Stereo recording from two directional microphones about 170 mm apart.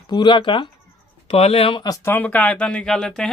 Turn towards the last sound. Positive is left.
turn(degrees=5)  # may be behind; listen again after turning